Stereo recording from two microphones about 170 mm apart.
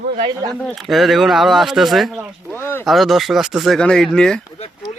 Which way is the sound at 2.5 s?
15° left (ahead or behind).